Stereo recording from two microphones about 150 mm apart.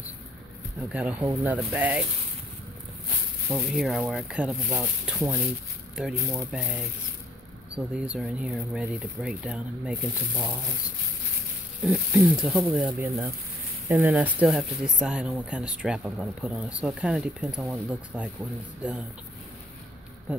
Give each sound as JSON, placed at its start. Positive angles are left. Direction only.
{"t": 0.7, "sound": "speech", "side_deg": -10}
{"t": 3.4, "sound": "speech", "side_deg": -15}
{"t": 3.8, "sound": "speech", "side_deg": 0}
{"t": 6.1, "sound": "speech", "side_deg": -20}
{"t": 6.5, "sound": "speech", "side_deg": -5}
{"t": 11.8, "sound": "speech", "side_deg": -5}
{"t": 20.3, "sound": "a sound", "side_deg": -5}